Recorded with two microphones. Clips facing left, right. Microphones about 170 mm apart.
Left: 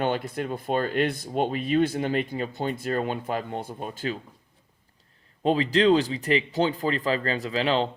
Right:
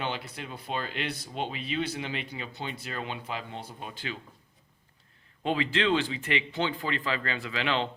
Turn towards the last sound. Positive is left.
turn(degrees=35)  # may be behind; listen again after turning